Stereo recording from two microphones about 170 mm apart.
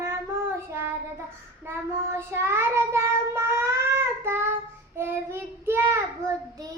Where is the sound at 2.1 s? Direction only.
15° right (ahead or behind).